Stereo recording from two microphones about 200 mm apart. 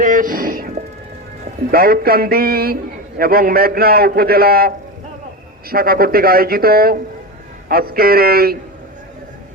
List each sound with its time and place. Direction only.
0.0 s music: 40° right (ahead or behind)
1.7 s a man's voice: 50° right (ahead or behind)